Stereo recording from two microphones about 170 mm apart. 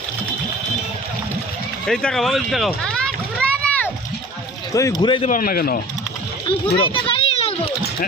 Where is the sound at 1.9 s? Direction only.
5° left (ahead or behind).